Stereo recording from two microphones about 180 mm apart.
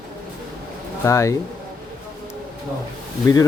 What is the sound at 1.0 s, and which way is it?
Speech, 15° left (ahead or behind).